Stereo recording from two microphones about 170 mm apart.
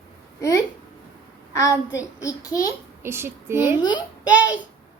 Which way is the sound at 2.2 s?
20° left (ahead or behind).